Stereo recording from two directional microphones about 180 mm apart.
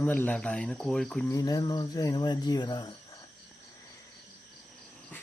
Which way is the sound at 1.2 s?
20° left (ahead or behind).